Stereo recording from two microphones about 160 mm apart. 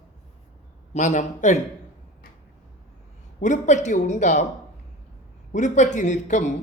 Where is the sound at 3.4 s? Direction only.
50° left (ahead or behind).